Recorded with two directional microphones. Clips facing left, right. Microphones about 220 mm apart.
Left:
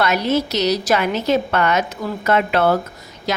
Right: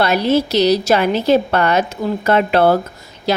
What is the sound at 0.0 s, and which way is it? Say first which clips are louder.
A woman's voice: right 3 dB; 30° right (ahead or behind).